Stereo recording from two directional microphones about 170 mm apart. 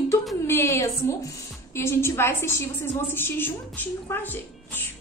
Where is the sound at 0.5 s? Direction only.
15° left (ahead or behind).